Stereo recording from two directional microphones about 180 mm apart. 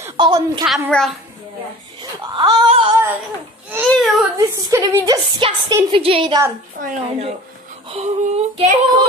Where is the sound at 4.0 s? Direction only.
Centre (ahead or behind).